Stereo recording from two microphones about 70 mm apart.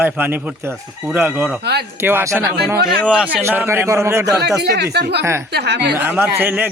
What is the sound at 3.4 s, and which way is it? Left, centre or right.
Speech, right.